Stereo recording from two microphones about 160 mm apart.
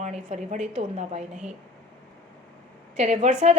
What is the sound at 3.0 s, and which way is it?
Speech, 45° right (ahead or behind).